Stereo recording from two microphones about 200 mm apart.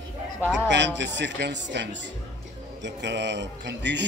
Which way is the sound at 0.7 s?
60° right (ahead or behind).